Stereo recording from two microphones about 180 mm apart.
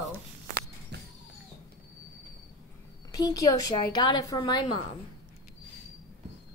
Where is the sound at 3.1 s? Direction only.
20° left (ahead or behind).